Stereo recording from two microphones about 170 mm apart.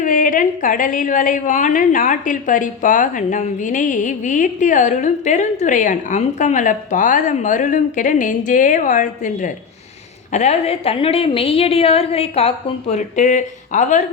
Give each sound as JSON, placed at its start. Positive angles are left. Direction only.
{"t": 0.0, "sound": "a woman's voice", "side_deg": 50}